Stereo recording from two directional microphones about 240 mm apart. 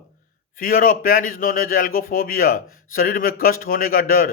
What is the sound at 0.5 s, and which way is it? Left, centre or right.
Speech, left.